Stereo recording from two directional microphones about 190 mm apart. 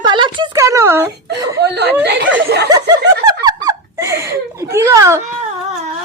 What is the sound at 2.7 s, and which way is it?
Snicker, 20° right (ahead or behind).